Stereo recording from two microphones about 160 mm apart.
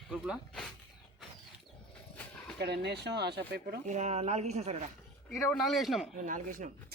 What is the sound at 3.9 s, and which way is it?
Speech, 45° right (ahead or behind).